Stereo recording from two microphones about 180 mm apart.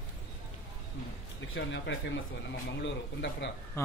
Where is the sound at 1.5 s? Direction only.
90° left.